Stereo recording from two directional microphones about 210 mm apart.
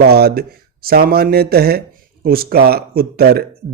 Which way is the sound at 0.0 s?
50° right (ahead or behind).